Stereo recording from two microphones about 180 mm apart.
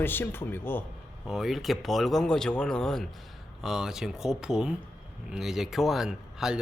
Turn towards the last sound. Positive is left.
turn(degrees=-5)  # may be behind; listen again after turning